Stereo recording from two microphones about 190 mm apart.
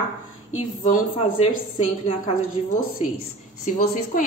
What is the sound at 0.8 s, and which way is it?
Speech, 40° left (ahead or behind).